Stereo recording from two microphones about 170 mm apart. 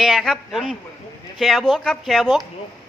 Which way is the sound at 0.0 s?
Centre (ahead or behind).